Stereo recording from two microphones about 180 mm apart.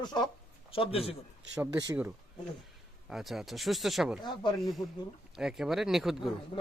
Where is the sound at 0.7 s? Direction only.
30° left (ahead or behind).